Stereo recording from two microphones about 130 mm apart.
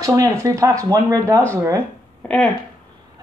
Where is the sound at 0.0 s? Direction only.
25° right (ahead or behind).